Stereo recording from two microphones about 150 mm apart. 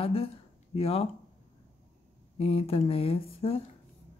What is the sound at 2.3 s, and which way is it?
Speech, 40° left (ahead or behind).